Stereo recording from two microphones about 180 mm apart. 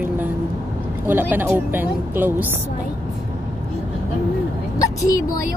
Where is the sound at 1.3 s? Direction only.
10° right (ahead or behind).